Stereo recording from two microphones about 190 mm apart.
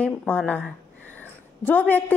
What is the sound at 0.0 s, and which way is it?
A woman's voice, 10° left (ahead or behind).